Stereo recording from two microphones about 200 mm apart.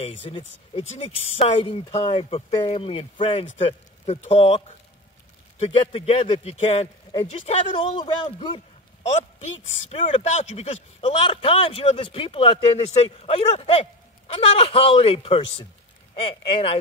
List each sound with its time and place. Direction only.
0.0 s speech: 25° left (ahead or behind)
1.9 s speech: 15° left (ahead or behind)
2.1 s a man's voice: 30° left (ahead or behind)
9.0 s speech: 35° left (ahead or behind)